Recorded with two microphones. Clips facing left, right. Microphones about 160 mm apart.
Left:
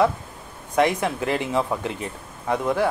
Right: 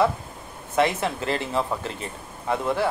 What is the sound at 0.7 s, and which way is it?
Speech, 15° left (ahead or behind).